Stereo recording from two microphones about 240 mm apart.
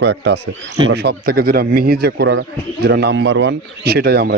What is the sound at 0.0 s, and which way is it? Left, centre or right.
A man's voice, right.